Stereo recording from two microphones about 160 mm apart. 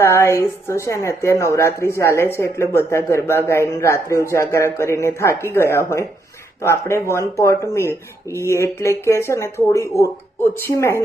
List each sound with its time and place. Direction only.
0.0 s a woman's voice: 15° left (ahead or behind)